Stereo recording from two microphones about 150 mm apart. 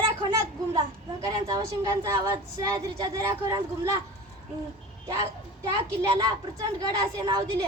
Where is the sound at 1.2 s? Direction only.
25° right (ahead or behind).